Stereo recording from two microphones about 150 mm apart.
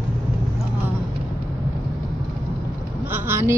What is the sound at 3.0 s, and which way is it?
Vehicle, 15° right (ahead or behind).